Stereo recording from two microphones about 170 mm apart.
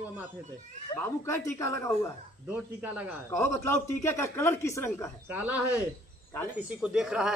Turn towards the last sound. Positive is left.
turn(degrees=-5)  # may be behind; listen again after turning